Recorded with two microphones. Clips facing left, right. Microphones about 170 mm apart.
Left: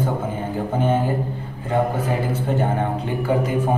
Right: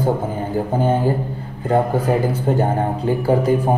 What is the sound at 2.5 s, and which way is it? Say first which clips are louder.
A man's voice: right 3 dB; 35° right (ahead or behind).